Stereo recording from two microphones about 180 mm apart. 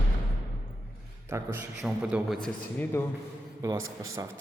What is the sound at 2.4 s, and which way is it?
Speech, 10° left (ahead or behind).